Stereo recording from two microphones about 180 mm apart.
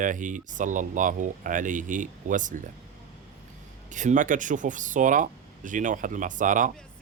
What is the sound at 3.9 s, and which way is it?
Speech, 45° right (ahead or behind).